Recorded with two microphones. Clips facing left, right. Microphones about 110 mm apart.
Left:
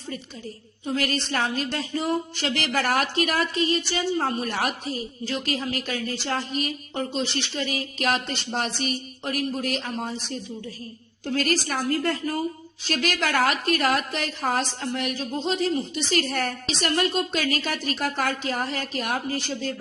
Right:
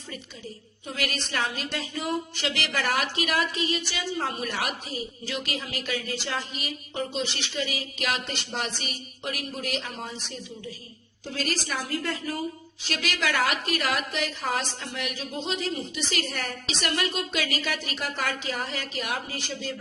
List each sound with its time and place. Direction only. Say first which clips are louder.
0.9 s a woman's voice: left 6 dB; 35° left (ahead or behind)